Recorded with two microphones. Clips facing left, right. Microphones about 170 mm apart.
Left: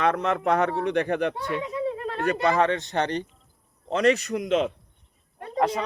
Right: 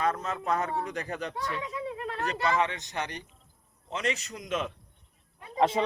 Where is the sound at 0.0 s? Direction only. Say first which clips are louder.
Left 7 dB; 70° left (ahead or behind).